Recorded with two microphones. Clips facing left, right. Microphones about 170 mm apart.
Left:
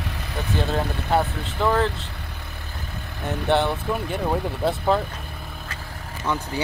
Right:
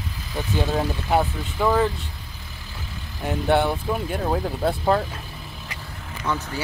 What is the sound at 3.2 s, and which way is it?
Speech, 5° right (ahead or behind).